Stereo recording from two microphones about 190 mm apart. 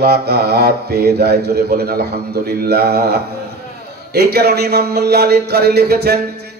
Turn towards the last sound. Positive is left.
turn(degrees=-60)  # may be behind; listen again after turning